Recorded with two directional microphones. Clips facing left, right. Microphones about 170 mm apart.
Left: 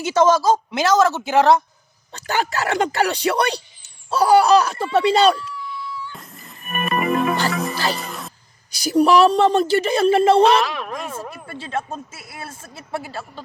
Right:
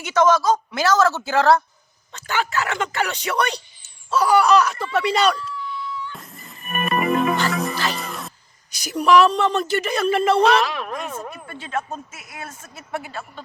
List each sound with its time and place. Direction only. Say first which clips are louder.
0.0 s a woman's voice: left 2 dB; 30° left (ahead or behind)
2.1 s speech: left 1 dB; 35° left (ahead or behind)
6.1 s music: right 1 dB; centre (ahead or behind)
8.7 s speech: left 2 dB; 35° left (ahead or behind)
10.4 s speech: left 2 dB; centre (ahead or behind)
11.4 s speech: left 1 dB; 30° left (ahead or behind)